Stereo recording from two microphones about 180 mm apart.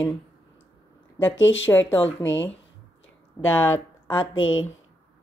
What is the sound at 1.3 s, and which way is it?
Speech, 90° left.